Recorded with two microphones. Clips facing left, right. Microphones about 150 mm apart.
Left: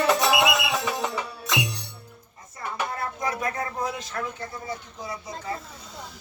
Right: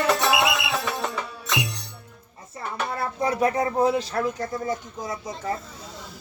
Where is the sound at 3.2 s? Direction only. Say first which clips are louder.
Right 8 dB; 30° right (ahead or behind).